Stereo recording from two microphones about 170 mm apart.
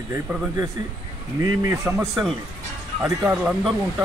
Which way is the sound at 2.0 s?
Centre (ahead or behind).